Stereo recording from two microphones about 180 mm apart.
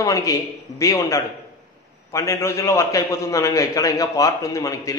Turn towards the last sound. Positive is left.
turn(degrees=20)  # may be behind; listen again after turning